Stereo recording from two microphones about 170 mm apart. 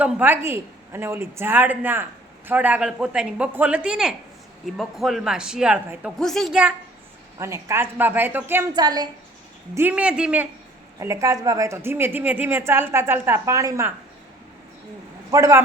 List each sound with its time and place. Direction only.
0.0 s a woman's voice: 10° right (ahead or behind)
7.3 s a woman's voice: 15° right (ahead or behind)
8.7 s a woman's voice: 25° right (ahead or behind)
9.7 s a woman's voice: 10° right (ahead or behind)
15.3 s a woman's voice: 20° right (ahead or behind)